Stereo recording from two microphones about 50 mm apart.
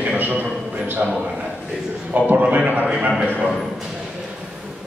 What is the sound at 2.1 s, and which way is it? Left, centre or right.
Speech, right.